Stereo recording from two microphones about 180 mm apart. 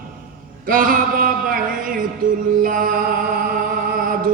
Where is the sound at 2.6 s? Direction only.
50° right (ahead or behind).